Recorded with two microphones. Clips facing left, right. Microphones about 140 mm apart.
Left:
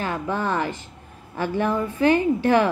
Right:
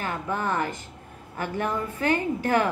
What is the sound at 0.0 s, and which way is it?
A woman's voice, 30° left (ahead or behind).